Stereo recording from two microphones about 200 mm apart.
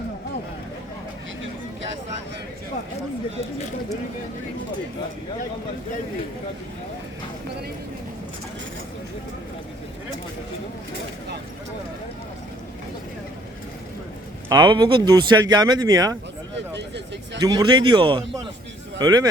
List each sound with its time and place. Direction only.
14.5 s speech: 20° right (ahead or behind)
16.6 s a sound: 60° right (ahead or behind)
17.4 s speech: 20° right (ahead or behind)